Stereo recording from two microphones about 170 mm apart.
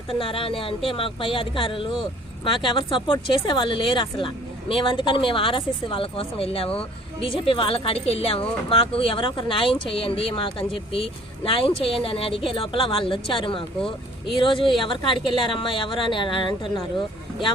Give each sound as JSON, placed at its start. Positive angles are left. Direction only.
{"t": 0.1, "sound": "speech", "side_deg": 30}